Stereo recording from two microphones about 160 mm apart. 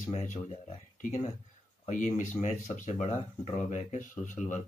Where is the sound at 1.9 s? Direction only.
50° left (ahead or behind).